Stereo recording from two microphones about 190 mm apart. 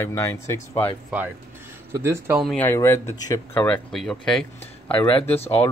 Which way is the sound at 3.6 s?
5° left (ahead or behind).